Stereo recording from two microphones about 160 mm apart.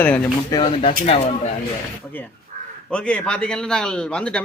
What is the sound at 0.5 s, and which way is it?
Speech, 35° left (ahead or behind).